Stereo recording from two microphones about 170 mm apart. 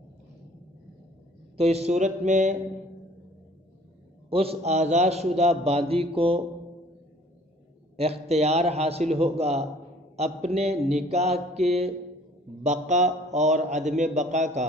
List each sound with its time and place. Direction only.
1.6 s speech: 40° right (ahead or behind)
4.3 s a man's voice: 35° right (ahead or behind)
7.9 s a man's voice: 35° right (ahead or behind)
12.6 s speech: 45° right (ahead or behind)